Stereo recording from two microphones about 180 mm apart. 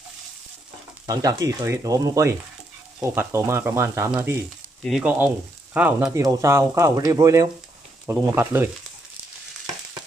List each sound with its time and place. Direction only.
1.0 s frying: 20° right (ahead or behind)
3.0 s speech: 15° right (ahead or behind)